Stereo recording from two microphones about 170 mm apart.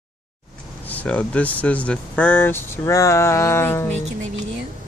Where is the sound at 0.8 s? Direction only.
10° left (ahead or behind).